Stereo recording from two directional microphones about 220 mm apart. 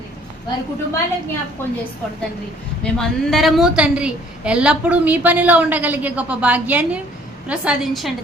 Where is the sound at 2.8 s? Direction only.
5° left (ahead or behind).